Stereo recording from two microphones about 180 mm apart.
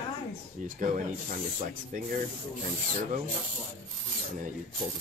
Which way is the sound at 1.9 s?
45° right (ahead or behind).